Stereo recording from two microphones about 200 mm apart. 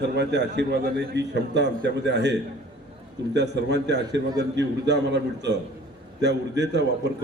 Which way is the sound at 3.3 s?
60° right (ahead or behind).